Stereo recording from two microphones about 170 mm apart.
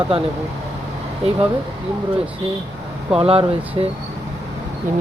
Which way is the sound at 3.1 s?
35° right (ahead or behind).